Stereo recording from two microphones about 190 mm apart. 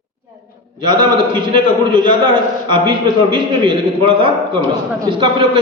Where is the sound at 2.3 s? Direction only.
25° right (ahead or behind).